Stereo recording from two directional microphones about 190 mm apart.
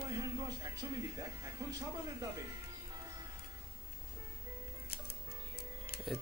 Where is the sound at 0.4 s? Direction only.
20° right (ahead or behind).